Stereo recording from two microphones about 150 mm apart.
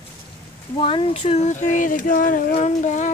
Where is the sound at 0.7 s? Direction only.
35° left (ahead or behind).